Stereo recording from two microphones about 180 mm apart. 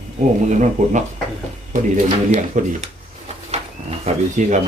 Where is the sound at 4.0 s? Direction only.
40° right (ahead or behind).